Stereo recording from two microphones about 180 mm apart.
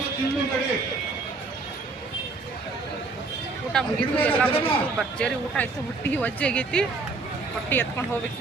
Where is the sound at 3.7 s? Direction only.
5° left (ahead or behind).